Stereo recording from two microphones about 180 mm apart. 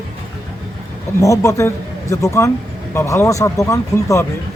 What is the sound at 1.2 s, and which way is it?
Speech, 15° left (ahead or behind).